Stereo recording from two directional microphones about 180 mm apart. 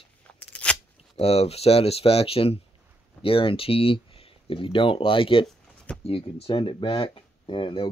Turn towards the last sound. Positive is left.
turn(degrees=30)  # may be behind; listen again after turning